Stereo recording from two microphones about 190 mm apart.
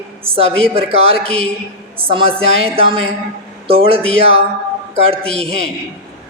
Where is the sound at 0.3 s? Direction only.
30° right (ahead or behind).